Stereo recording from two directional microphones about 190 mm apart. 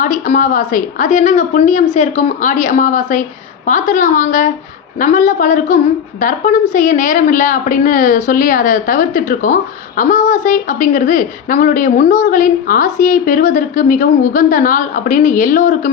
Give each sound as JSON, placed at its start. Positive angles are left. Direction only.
{"t": 0.0, "sound": "a woman's voice", "side_deg": 45}